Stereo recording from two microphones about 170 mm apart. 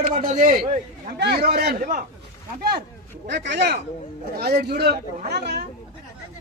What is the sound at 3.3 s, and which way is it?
Speech, 90° right.